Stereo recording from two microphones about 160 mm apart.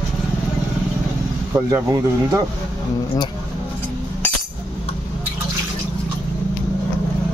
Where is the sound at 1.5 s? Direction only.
15° right (ahead or behind).